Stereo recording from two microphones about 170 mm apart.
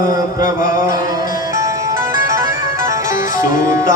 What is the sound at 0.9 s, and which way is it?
Music, 20° right (ahead or behind).